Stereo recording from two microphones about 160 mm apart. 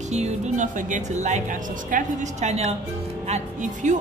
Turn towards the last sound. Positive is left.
turn(degrees=-50)  # may be behind; listen again after turning